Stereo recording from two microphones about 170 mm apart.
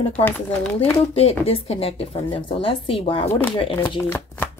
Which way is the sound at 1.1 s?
35° left (ahead or behind).